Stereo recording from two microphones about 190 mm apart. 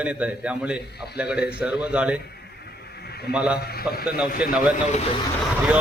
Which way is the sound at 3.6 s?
55° left (ahead or behind).